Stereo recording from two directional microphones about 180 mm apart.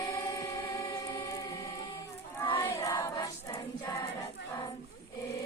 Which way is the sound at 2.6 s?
20° left (ahead or behind).